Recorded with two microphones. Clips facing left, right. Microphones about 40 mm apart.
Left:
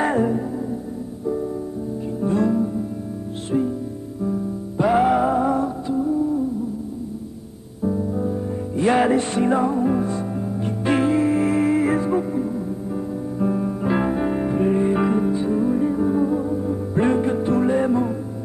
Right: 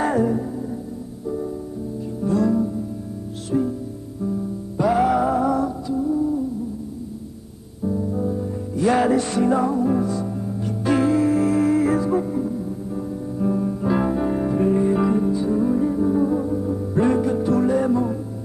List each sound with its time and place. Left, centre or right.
0.0 s music: left
2.2 s music: left
2.5 s music: centre
4.2 s music: left
7.8 s music: centre
8.7 s music: left
12.2 s music: centre
17.0 s music: left